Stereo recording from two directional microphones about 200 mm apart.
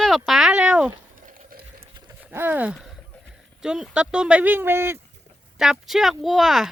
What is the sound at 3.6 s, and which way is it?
Speech, centre (ahead or behind).